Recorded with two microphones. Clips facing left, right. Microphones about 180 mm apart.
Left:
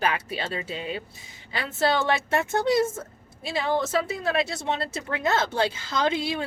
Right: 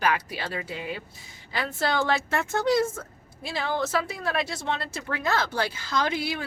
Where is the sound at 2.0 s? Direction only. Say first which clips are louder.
Left 2 dB; 20° left (ahead or behind).